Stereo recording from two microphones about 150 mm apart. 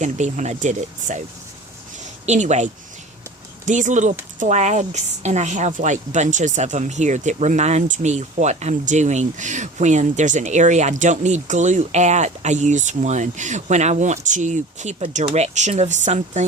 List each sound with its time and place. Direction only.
0.0 s a woman's voice: 50° right (ahead or behind)
2.2 s a woman's voice: 50° right (ahead or behind)
3.7 s a woman's voice: 55° right (ahead or behind)